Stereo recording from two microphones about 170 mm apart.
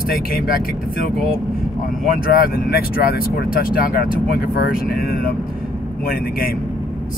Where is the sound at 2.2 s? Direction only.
60° left (ahead or behind).